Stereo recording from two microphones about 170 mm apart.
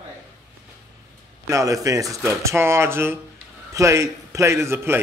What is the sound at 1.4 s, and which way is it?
A man's voice, 20° right (ahead or behind).